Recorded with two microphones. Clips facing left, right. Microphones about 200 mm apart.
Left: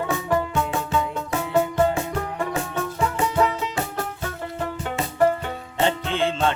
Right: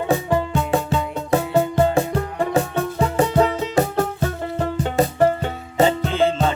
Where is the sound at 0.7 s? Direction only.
35° right (ahead or behind).